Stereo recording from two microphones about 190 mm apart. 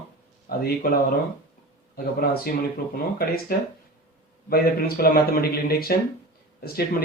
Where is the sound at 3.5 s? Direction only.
50° left (ahead or behind).